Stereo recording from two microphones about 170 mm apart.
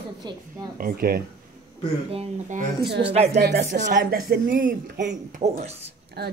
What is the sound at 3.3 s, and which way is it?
Speech, 70° right (ahead or behind).